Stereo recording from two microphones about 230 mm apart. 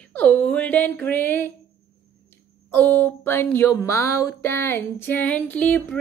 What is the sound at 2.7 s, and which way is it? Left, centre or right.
Speech, centre.